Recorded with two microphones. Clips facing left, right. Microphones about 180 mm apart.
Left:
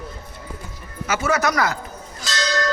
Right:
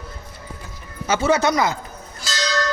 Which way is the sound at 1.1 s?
30° right (ahead or behind).